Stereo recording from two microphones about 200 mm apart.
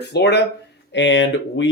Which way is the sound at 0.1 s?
55° left (ahead or behind).